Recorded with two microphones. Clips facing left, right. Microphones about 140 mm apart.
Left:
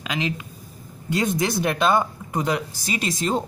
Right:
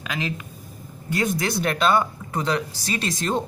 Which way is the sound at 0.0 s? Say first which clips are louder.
Left 2 dB; 20° left (ahead or behind).